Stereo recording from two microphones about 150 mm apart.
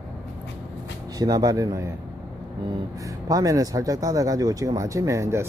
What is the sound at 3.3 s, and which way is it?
Speech, 25° right (ahead or behind).